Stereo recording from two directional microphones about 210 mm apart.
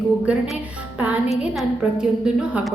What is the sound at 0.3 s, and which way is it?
A woman's voice, 5° right (ahead or behind).